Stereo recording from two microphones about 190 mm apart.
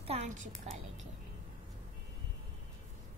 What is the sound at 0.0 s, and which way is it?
Speech, 35° right (ahead or behind).